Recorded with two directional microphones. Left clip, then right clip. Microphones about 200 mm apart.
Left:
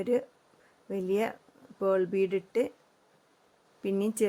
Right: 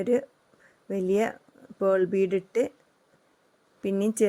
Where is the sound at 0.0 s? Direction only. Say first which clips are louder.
Right 3 dB; 15° right (ahead or behind).